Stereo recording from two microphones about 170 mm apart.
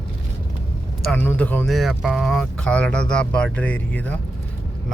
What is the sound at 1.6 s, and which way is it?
Speech, centre (ahead or behind).